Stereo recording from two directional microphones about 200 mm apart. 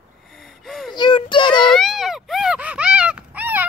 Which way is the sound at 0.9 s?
25° left (ahead or behind).